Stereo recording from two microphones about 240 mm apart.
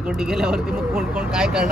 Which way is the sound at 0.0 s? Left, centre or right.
Centre.